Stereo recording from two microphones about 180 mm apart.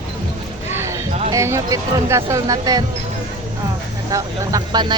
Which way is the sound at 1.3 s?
15° right (ahead or behind).